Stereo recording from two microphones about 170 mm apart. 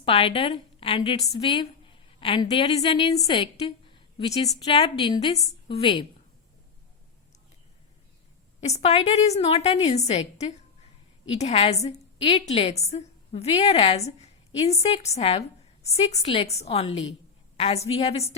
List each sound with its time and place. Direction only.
0.0 s a woman's voice: 30° left (ahead or behind)
8.6 s a woman's voice: 40° left (ahead or behind)